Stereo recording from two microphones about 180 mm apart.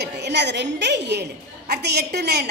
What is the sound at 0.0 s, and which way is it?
A woman's voice, 70° right (ahead or behind).